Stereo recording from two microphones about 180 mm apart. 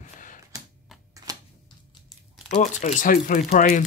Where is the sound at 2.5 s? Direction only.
40° left (ahead or behind).